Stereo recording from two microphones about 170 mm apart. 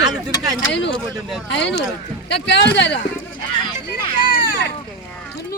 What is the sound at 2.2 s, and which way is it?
Speech, 90° left.